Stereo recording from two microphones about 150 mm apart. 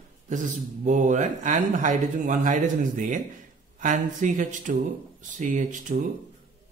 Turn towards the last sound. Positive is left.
turn(degrees=-60)  # may be behind; listen again after turning